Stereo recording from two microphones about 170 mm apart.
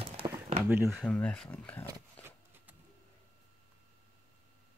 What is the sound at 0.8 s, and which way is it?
Speech, 5° left (ahead or behind).